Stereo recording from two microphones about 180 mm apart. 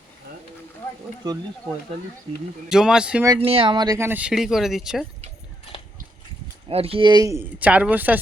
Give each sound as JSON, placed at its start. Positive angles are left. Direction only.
{"t": 2.6, "sound": "speech", "side_deg": -5}
{"t": 3.2, "sound": "speech", "side_deg": -30}
{"t": 6.7, "sound": "speech", "side_deg": -30}